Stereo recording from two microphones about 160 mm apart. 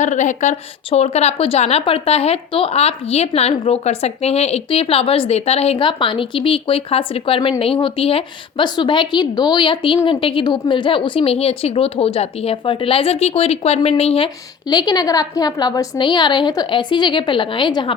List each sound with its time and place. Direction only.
0.0 s a woman's voice: 50° left (ahead or behind)
14.7 s a woman's voice: 25° left (ahead or behind)